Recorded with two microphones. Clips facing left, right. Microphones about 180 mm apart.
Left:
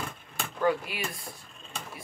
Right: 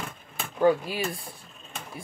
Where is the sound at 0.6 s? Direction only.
30° right (ahead or behind).